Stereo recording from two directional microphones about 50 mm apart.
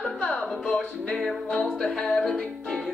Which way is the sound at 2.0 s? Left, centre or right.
Centre.